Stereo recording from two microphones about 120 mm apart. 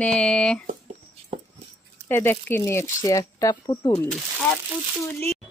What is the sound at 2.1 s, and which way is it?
Speech, 20° left (ahead or behind).